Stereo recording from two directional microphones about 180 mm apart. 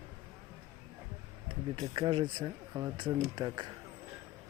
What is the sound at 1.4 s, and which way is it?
Speech, 25° right (ahead or behind).